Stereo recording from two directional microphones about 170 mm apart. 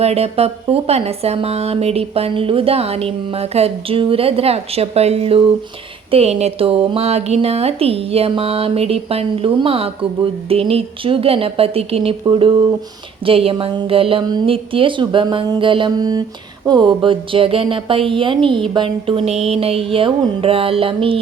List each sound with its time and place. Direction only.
0.0 s a woman's voice: 35° right (ahead or behind)